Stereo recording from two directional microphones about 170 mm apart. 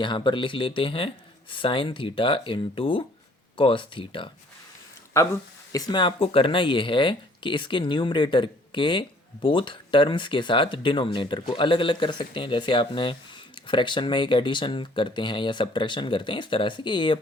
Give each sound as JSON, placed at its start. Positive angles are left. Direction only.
{"t": 0.0, "sound": "speech", "side_deg": 30}
{"t": 5.2, "sound": "speech", "side_deg": 15}